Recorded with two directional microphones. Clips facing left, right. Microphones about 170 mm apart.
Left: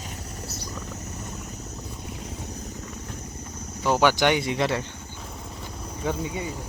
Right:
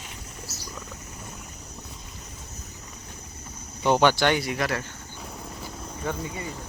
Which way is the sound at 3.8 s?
5° left (ahead or behind).